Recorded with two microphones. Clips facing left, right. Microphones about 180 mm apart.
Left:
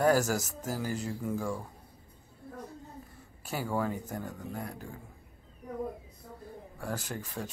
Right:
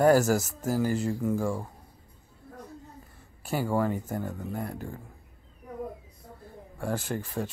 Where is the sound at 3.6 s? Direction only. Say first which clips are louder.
Right 4 dB; 10° right (ahead or behind).